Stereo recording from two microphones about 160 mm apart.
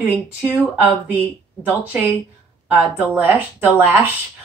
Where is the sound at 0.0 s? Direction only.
10° right (ahead or behind).